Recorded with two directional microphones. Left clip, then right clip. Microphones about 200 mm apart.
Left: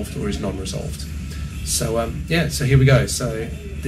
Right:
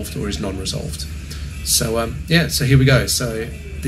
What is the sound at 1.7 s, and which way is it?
A man's voice, 5° right (ahead or behind).